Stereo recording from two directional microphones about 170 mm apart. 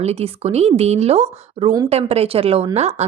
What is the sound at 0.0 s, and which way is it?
A woman's voice, 40° right (ahead or behind).